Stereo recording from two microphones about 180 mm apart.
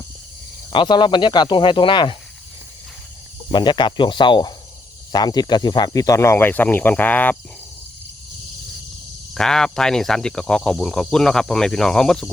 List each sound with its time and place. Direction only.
0.7 s speech: 25° left (ahead or behind)
3.5 s speech: 25° left (ahead or behind)
9.3 s speech: 5° left (ahead or behind)